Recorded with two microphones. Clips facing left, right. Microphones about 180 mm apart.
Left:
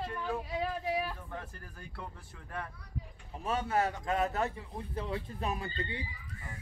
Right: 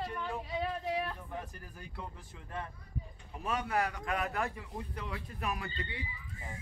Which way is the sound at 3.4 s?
25° left (ahead or behind).